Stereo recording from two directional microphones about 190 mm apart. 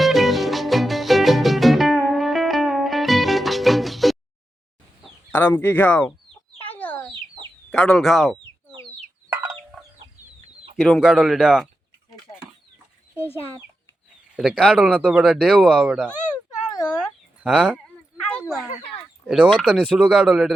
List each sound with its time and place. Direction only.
0.0 s music: centre (ahead or behind)
5.0 s speech: 10° left (ahead or behind)
6.6 s chicken: 10° left (ahead or behind)
7.1 s chicken: 25° right (ahead or behind)
7.7 s speech: 5° left (ahead or behind)
9.3 s chicken: 15° right (ahead or behind)
10.8 s speech: centre (ahead or behind)
14.3 s speech: 5° right (ahead or behind)
17.4 s dog: 5° right (ahead or behind)
19.2 s speech: centre (ahead or behind)